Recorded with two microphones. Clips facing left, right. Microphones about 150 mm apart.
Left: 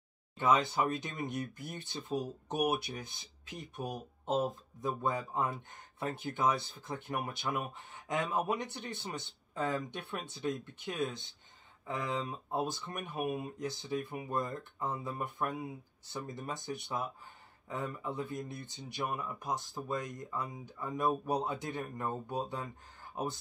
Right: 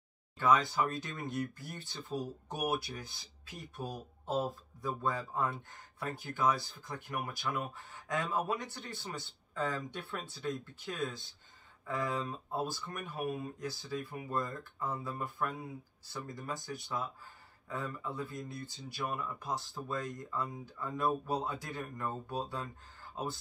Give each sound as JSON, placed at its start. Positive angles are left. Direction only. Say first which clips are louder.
{"t": 0.4, "sound": "speech", "louder": "even", "side_deg": 20}